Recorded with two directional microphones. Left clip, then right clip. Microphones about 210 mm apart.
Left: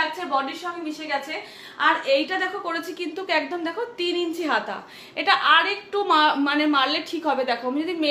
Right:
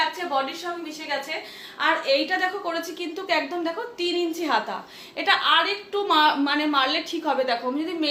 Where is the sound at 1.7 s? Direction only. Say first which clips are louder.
Left 2 dB; 15° left (ahead or behind).